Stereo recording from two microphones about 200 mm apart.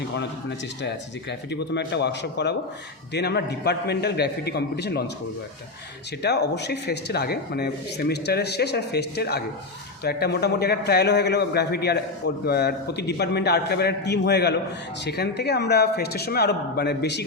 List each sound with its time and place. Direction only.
0.8 s speech: 60° left (ahead or behind)
6.2 s a man's voice: 55° left (ahead or behind)